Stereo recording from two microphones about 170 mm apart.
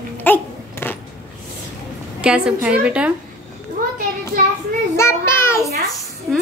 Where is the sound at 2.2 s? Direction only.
5° right (ahead or behind).